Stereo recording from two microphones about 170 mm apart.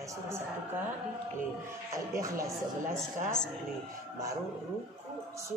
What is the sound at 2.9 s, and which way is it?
Speech, 5° left (ahead or behind).